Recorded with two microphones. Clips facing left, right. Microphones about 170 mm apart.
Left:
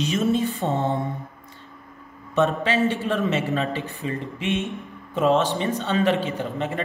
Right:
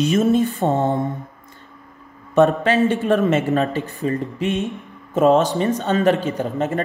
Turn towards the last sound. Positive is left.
turn(degrees=-45)  # may be behind; listen again after turning